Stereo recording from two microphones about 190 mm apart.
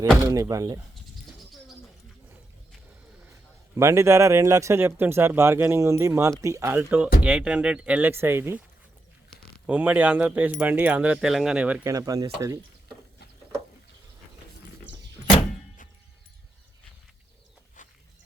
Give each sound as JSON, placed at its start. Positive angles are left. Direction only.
{"t": 0.2, "sound": "speech", "side_deg": -15}
{"t": 3.8, "sound": "speech", "side_deg": -15}
{"t": 9.6, "sound": "speech", "side_deg": -10}
{"t": 17.8, "sound": "a sound", "side_deg": 40}